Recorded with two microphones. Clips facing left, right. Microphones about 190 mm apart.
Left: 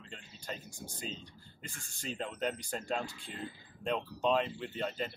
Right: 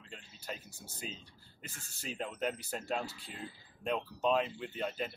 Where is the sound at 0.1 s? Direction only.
5° right (ahead or behind).